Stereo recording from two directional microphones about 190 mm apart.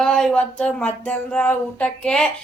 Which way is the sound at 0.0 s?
5° left (ahead or behind).